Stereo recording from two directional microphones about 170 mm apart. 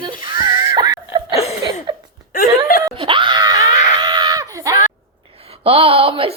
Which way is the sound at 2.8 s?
30° right (ahead or behind).